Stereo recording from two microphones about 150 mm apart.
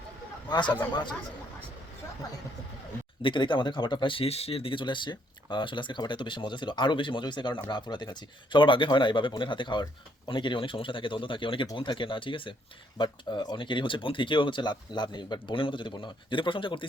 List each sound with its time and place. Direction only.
0.4 s speech: 30° left (ahead or behind)
3.2 s speech: 30° left (ahead or behind)